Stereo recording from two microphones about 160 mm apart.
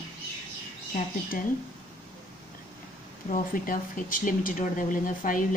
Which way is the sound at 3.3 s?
60° left (ahead or behind).